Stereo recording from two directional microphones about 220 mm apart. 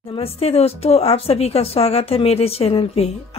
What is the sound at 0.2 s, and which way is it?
A woman's voice, 25° left (ahead or behind).